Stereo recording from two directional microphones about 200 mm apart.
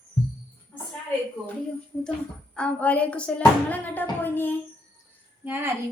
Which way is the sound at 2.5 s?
5° left (ahead or behind).